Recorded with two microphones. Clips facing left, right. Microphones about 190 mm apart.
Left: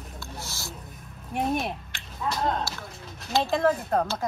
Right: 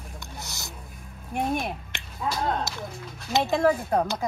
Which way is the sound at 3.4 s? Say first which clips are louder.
Right 1 dB; 5° right (ahead or behind).